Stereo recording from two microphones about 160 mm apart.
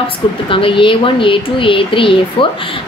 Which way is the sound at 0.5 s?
35° left (ahead or behind).